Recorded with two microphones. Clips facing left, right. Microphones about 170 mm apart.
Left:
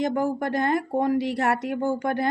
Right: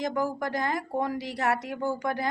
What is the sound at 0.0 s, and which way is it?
Speech, 55° left (ahead or behind).